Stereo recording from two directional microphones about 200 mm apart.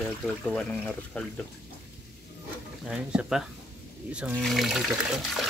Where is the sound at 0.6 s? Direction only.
5° left (ahead or behind).